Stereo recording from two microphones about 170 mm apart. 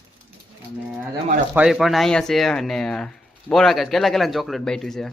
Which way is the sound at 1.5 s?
5° right (ahead or behind).